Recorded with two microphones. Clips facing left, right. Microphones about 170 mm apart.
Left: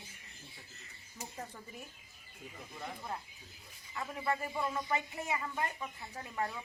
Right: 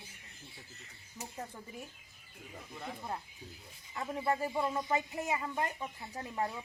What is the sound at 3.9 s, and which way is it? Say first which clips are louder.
Speech: right 3 dB; 25° right (ahead or behind).